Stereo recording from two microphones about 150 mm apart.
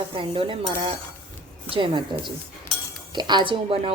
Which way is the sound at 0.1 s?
35° right (ahead or behind).